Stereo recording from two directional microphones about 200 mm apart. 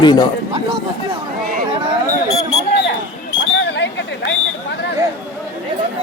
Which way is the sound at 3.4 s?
65° left (ahead or behind).